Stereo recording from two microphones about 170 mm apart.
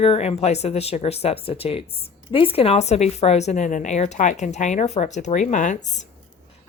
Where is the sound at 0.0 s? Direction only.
35° left (ahead or behind).